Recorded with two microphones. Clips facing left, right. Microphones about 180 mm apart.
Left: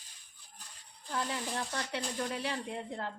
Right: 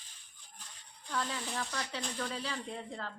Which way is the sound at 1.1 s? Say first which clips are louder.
Left 1 dB; 15° left (ahead or behind).